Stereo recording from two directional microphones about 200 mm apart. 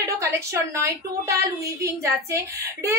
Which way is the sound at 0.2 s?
15° right (ahead or behind).